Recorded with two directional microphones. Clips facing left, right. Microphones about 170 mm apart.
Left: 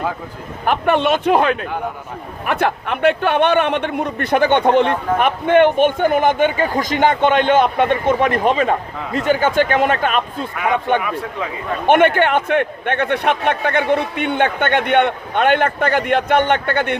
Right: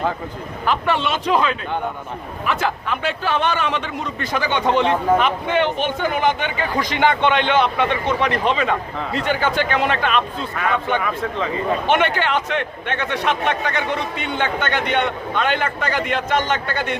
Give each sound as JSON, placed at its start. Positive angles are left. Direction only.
{"t": 0.6, "sound": "a man's voice", "side_deg": 55}
{"t": 10.6, "sound": "speech", "side_deg": 15}
{"t": 11.9, "sound": "a man's voice", "side_deg": 55}